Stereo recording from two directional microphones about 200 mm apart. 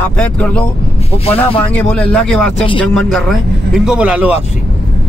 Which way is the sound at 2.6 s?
25° left (ahead or behind).